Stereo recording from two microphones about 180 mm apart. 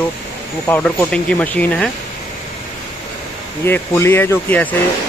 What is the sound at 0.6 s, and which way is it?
Speech, 10° left (ahead or behind).